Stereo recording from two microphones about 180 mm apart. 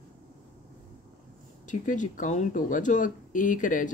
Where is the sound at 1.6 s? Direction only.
45° left (ahead or behind).